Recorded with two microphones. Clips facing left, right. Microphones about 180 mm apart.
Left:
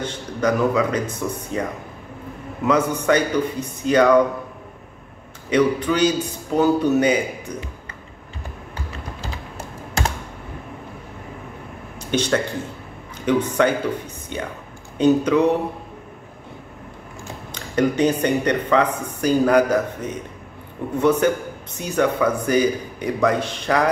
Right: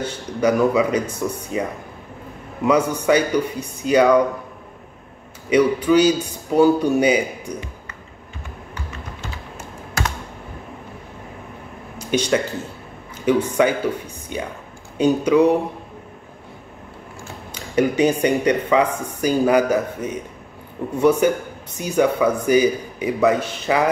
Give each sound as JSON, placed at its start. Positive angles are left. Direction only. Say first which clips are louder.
{"t": 0.0, "sound": "speech", "louder": "right 2 dB", "side_deg": -10}
{"t": 3.0, "sound": "speech", "louder": "right 1 dB", "side_deg": -10}
{"t": 5.5, "sound": "speech", "louder": "right 3 dB", "side_deg": -10}
{"t": 9.2, "sound": "typing", "louder": "left 1 dB", "side_deg": 35}
{"t": 12.0, "sound": "speech", "louder": "right 1 dB", "side_deg": -10}
{"t": 17.7, "sound": "speech", "louder": "right 1 dB", "side_deg": -10}